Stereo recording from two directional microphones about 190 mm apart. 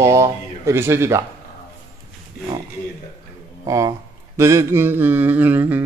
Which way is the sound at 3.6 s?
15° right (ahead or behind).